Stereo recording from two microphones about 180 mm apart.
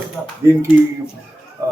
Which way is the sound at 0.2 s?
5° left (ahead or behind).